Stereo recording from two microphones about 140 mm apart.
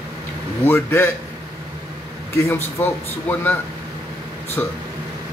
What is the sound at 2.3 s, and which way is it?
A man's voice, 15° left (ahead or behind).